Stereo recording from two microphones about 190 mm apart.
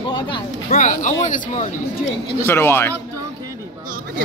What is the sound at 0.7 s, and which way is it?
Speech, 40° left (ahead or behind).